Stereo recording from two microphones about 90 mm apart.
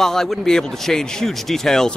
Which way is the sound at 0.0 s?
5° left (ahead or behind).